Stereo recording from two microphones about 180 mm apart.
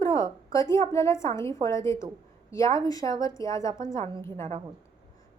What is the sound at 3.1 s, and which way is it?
Speech, 20° left (ahead or behind).